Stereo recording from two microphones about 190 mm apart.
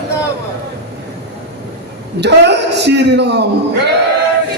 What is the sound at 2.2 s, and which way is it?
A man's voice, 65° right (ahead or behind).